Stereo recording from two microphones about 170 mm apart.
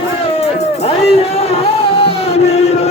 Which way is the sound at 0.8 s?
35° left (ahead or behind).